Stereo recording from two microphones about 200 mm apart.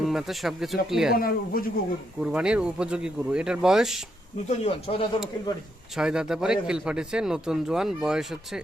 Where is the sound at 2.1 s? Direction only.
5° right (ahead or behind).